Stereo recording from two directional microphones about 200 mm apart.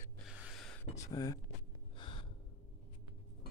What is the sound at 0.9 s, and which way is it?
Speech, 15° left (ahead or behind).